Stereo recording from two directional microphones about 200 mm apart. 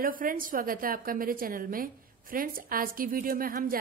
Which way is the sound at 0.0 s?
45° right (ahead or behind).